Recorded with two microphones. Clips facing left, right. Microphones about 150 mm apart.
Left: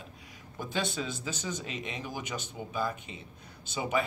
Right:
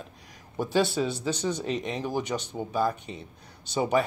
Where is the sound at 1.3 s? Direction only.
35° right (ahead or behind).